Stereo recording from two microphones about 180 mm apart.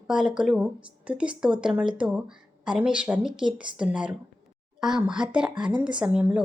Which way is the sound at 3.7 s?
5° right (ahead or behind).